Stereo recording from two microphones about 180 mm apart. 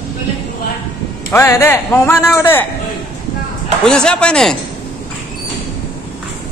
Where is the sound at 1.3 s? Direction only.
15° left (ahead or behind).